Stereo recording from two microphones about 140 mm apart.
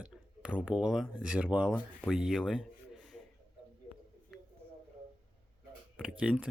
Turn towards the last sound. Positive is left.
turn(degrees=-5)  # may be behind; listen again after turning